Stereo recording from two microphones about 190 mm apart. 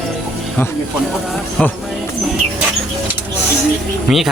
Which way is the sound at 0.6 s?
10° left (ahead or behind).